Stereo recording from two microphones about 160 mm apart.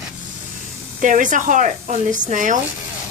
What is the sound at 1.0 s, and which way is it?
Speech, 55° right (ahead or behind).